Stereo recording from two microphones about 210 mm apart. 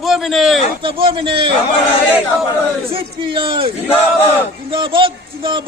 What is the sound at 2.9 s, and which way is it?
A man's voice, 25° right (ahead or behind).